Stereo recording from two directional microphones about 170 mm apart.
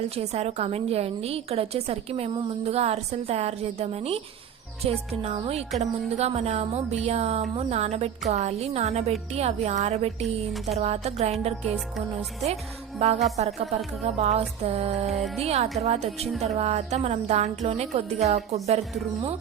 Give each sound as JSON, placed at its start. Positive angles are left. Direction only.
{"t": 0.2, "sound": "a woman's voice", "side_deg": -40}
{"t": 10.2, "sound": "speech", "side_deg": 0}
{"t": 10.8, "sound": "a woman's voice", "side_deg": -40}
{"t": 13.0, "sound": "a woman's voice", "side_deg": -35}